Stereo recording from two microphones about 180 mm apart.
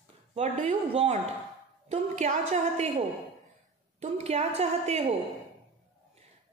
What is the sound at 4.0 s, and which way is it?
A woman's voice, 40° right (ahead or behind).